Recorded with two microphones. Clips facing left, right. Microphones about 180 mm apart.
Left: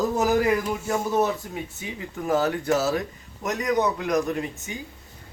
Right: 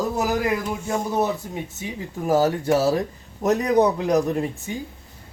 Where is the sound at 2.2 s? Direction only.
30° right (ahead or behind).